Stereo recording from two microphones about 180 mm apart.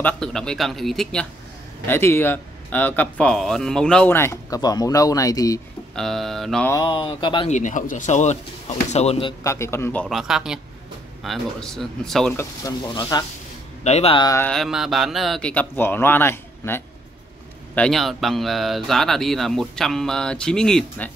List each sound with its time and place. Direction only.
0.0 s speech: 5° left (ahead or behind)
1.9 s a man's voice: 10° left (ahead or behind)
5.9 s speech: centre (ahead or behind)
6.7 s speech: 25° left (ahead or behind)
7.4 s speech: 45° left (ahead or behind)
9.4 s a man's voice: 15° left (ahead or behind)
10.0 s speech: centre (ahead or behind)
12.4 s speech: 20° left (ahead or behind)
13.8 s speech: 35° left (ahead or behind)
14.5 s a man's voice: centre (ahead or behind)